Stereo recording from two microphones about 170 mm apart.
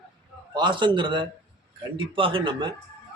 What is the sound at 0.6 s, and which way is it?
A man's voice, 30° right (ahead or behind).